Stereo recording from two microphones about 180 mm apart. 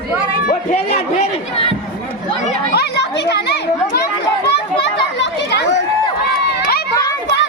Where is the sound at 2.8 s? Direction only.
70° left (ahead or behind).